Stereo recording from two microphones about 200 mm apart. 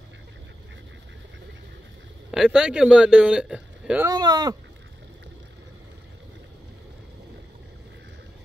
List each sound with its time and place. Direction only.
2.3 s speech: 5° right (ahead or behind)
4.1 s speech: 20° right (ahead or behind)